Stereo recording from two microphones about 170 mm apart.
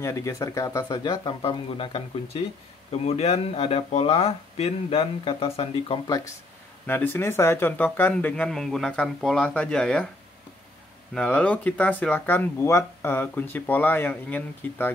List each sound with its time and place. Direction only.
0.0 s speech: 20° left (ahead or behind)
1.4 s speech: 30° left (ahead or behind)
6.0 s speech: 20° left (ahead or behind); by 10.0 s 5° left (ahead or behind)
11.1 s speech: 5° left (ahead or behind)